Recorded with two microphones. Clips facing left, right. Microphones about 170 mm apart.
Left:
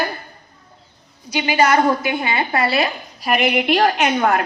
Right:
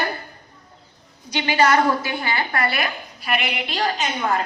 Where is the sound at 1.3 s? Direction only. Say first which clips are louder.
Left 2 dB; 10° left (ahead or behind); by 2.9 s 25° left (ahead or behind).